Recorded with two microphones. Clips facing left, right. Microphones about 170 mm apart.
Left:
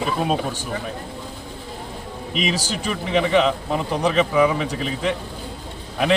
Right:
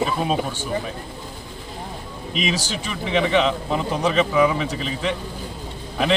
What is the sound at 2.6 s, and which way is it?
Speech, 40° left (ahead or behind).